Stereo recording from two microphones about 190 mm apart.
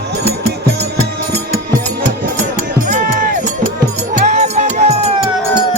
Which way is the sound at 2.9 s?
40° right (ahead or behind).